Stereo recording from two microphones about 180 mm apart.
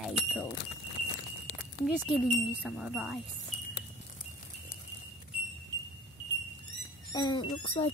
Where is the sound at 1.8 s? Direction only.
Centre (ahead or behind).